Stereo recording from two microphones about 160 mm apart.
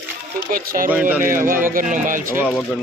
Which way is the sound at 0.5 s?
60° right (ahead or behind).